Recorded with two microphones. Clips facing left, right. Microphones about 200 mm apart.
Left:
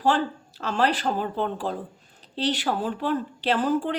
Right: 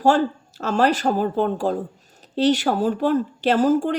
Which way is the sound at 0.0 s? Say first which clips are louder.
Right 5 dB; 45° right (ahead or behind).